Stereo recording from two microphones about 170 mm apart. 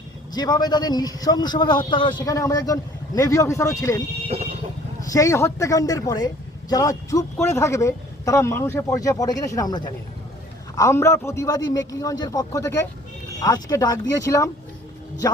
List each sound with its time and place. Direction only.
0.3 s speech: 25° left (ahead or behind)
4.3 s vehicle: 35° right (ahead or behind)
5.0 s a man's voice: 20° left (ahead or behind)